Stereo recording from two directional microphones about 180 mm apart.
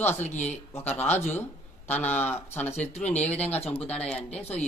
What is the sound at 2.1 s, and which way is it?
Speech, 10° left (ahead or behind).